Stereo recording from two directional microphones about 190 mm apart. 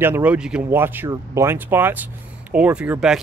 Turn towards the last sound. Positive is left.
turn(degrees=-5)  # may be behind; listen again after turning